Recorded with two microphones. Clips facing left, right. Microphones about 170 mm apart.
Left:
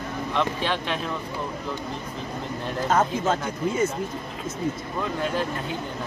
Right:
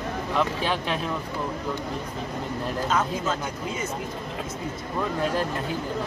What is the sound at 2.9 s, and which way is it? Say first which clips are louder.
Speech: left 5 dB; 50° left (ahead or behind).